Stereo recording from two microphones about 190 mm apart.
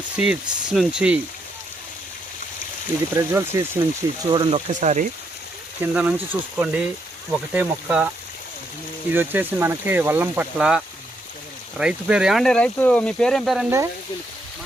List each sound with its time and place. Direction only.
0.2 s speech: 5° right (ahead or behind)
3.1 s speech: 15° right (ahead or behind)
4.7 s speech: 40° right (ahead or behind)
5.8 s speech: 5° right (ahead or behind)
9.1 s speech: 10° right (ahead or behind)